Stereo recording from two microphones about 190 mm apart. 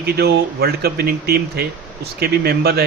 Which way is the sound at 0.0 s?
55° right (ahead or behind).